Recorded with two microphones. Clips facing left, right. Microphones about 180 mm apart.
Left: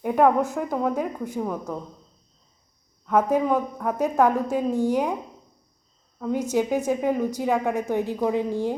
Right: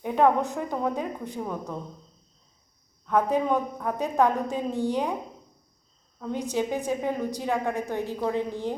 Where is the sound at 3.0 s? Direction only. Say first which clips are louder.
Left 3 dB; 5° left (ahead or behind).